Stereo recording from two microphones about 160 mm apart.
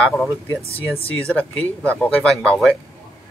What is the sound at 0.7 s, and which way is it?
Speech, 35° left (ahead or behind).